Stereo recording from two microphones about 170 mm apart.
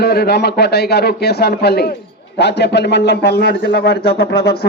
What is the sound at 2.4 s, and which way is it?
A man's voice, 90° left.